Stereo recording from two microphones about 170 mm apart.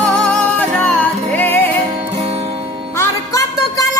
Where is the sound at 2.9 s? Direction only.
15° left (ahead or behind).